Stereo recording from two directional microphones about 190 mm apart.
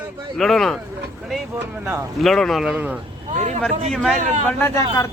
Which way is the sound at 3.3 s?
40° right (ahead or behind).